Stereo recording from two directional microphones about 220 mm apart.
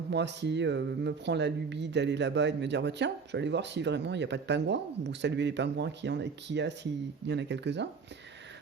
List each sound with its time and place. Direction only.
0.1 s speech: 55° right (ahead or behind)